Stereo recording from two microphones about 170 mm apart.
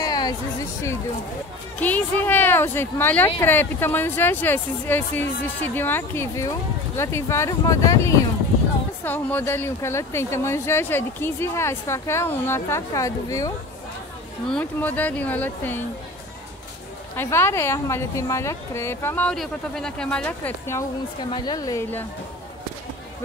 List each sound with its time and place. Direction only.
0.0 s a sound: 25° left (ahead or behind)
1.8 s speech: 10° left (ahead or behind)
14.5 s speech: 10° left (ahead or behind)
17.2 s speech: 15° left (ahead or behind)
21.3 s a woman's voice: 20° left (ahead or behind)